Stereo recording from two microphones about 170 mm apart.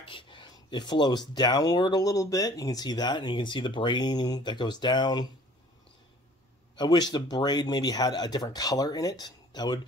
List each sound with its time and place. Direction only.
0.0 s a sound: 30° left (ahead or behind)
1.3 s speech: 25° left (ahead or behind)
6.8 s speech: 25° left (ahead or behind)